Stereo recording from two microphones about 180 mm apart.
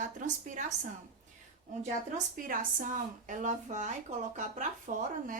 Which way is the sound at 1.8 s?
45° right (ahead or behind).